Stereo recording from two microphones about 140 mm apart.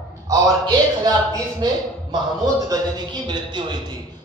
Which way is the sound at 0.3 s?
30° right (ahead or behind).